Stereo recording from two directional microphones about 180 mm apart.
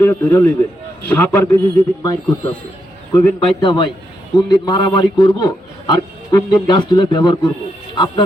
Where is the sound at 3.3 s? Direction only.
25° left (ahead or behind).